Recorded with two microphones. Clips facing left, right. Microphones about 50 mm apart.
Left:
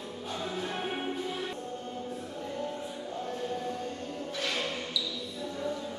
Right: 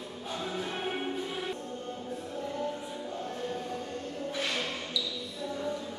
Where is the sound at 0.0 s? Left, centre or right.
Centre.